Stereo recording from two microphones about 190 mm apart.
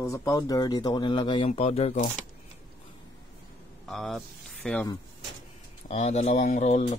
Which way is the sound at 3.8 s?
Centre (ahead or behind).